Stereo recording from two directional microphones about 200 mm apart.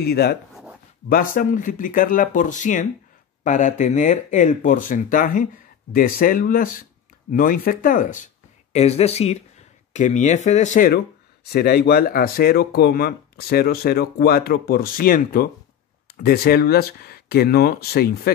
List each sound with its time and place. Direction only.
0.0 s speech: 50° left (ahead or behind)
11.5 s speech: 50° left (ahead or behind)